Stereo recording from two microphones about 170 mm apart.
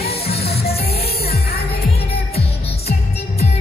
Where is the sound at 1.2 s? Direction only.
65° left (ahead or behind).